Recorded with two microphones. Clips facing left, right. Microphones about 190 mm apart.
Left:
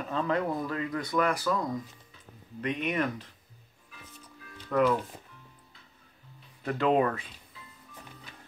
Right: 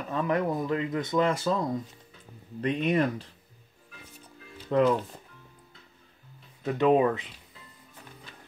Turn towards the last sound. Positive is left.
turn(degrees=-15)  # may be behind; listen again after turning